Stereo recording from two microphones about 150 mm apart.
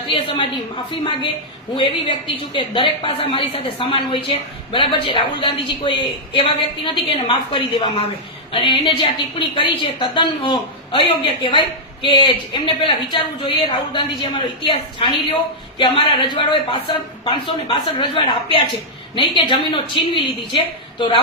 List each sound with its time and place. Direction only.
0.1 s a woman's voice: 35° left (ahead or behind)
12.0 s a woman's voice: 35° left (ahead or behind)